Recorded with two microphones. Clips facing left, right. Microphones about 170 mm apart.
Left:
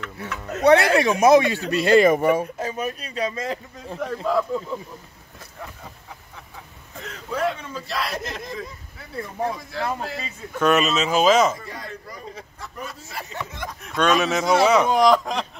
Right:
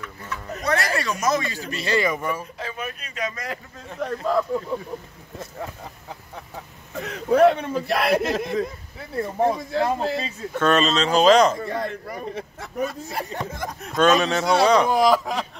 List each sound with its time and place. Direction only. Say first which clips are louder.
0.0 s speech: left 2 dB; 75° left (ahead or behind)
2.6 s speech: left 5 dB; 40° left (ahead or behind)
3.9 s speech: even; centre (ahead or behind)
7.2 s speech: right 9 dB; 60° right (ahead or behind)
9.2 s speech: right 6 dB; 30° right (ahead or behind)
10.6 s speech: even; 10° left (ahead or behind)
11.6 s speech: right 8 dB; 55° right (ahead or behind)
13.5 s speech: right 3 dB; 45° right (ahead or behind)
13.9 s speech: right 2 dB; centre (ahead or behind)